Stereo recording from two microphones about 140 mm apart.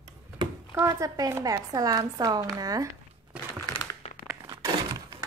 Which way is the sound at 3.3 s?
10° right (ahead or behind).